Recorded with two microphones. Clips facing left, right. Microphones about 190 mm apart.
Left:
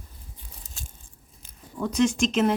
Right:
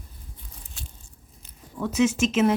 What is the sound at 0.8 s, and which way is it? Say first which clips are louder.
Biting: right 1 dB; 40° left (ahead or behind).